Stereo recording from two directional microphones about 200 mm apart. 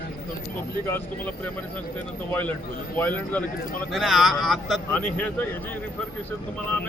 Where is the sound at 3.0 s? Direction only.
10° left (ahead or behind).